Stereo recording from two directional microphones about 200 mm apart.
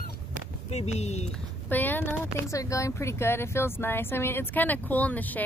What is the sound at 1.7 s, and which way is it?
Speech, 10° left (ahead or behind).